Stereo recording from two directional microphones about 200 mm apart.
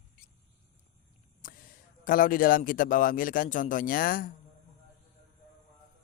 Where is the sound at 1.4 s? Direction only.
45° left (ahead or behind).